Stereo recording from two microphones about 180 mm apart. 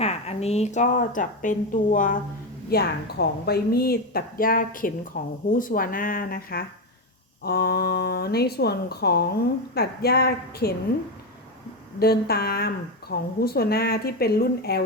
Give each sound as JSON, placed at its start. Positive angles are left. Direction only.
{"t": 0.0, "sound": "a woman's voice", "side_deg": 35}
{"t": 2.6, "sound": "a woman's voice", "side_deg": 60}
{"t": 11.9, "sound": "speech", "side_deg": 60}